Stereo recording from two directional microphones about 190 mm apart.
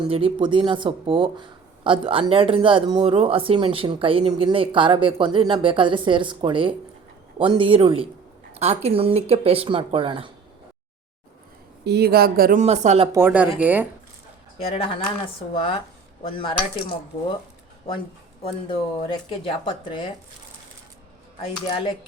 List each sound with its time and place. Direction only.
0.0 s speech: 30° right (ahead or behind)
11.9 s speech: 55° right (ahead or behind); by 13.1 s 35° right (ahead or behind)
13.1 s speech: 10° right (ahead or behind)
14.6 s speech: 30° left (ahead or behind)
18.4 s speech: 30° left (ahead or behind)
21.7 s speech: 30° left (ahead or behind)